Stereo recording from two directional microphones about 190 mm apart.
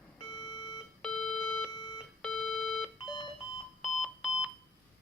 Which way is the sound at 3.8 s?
Centre (ahead or behind).